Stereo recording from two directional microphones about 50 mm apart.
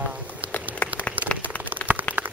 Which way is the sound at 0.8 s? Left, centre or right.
Left.